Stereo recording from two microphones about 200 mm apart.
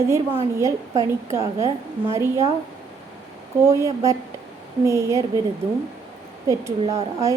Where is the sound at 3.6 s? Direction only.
15° right (ahead or behind).